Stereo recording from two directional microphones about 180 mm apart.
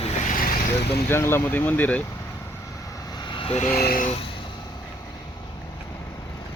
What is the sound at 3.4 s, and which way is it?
Speech, 35° left (ahead or behind).